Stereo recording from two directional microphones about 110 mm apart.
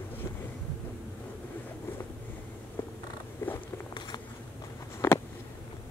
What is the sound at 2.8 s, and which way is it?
Purr, 20° left (ahead or behind).